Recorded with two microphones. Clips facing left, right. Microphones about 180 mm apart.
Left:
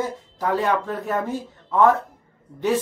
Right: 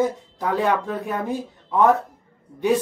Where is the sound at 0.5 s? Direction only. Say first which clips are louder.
Right 1 dB; 15° right (ahead or behind).